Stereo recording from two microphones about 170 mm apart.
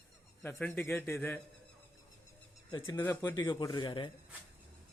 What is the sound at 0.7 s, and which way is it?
Speech, 15° left (ahead or behind).